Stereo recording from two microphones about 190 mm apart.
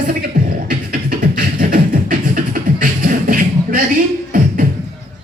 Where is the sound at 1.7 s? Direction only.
45° right (ahead or behind).